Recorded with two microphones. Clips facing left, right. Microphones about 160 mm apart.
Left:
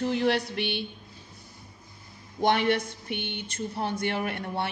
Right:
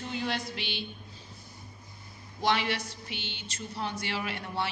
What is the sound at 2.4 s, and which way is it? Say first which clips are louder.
A woman's voice: left 5 dB; 50° left (ahead or behind).